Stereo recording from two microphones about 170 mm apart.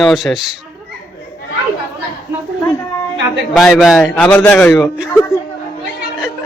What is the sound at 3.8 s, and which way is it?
A man's voice, centre (ahead or behind).